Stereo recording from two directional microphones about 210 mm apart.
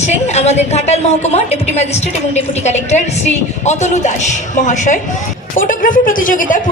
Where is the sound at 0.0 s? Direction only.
30° left (ahead or behind).